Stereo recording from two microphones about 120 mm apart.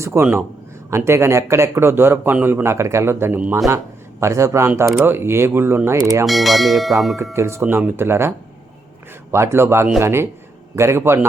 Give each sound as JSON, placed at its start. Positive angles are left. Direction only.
{"t": 0.0, "sound": "a man's voice", "side_deg": -20}
{"t": 6.2, "sound": "speech", "side_deg": 0}
{"t": 7.3, "sound": "a man's voice", "side_deg": -20}
{"t": 9.3, "sound": "a man's voice", "side_deg": -20}